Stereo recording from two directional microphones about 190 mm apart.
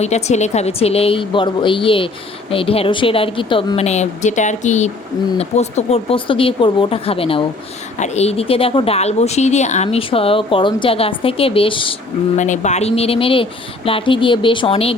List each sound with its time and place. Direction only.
0.0 s a woman's voice: 35° left (ahead or behind)
12.4 s a woman's voice: 40° left (ahead or behind)